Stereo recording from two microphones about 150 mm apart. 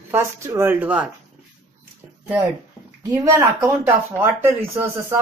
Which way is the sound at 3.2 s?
15° right (ahead or behind).